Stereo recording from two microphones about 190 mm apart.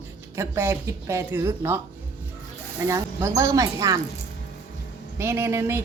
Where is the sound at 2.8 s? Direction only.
15° right (ahead or behind).